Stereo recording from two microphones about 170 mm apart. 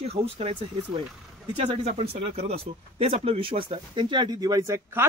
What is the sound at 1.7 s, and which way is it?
Speech, 40° right (ahead or behind).